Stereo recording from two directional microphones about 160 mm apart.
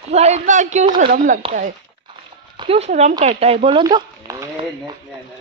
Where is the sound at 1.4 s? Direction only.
35° right (ahead or behind).